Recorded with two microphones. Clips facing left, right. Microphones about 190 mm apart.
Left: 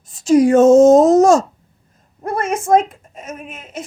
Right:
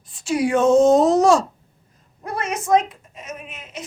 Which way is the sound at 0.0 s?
40° left (ahead or behind).